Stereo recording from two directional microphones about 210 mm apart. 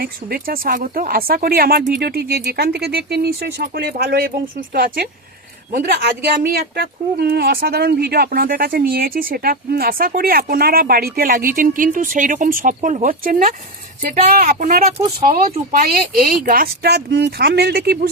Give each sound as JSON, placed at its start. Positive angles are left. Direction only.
{"t": 0.0, "sound": "speech", "side_deg": -45}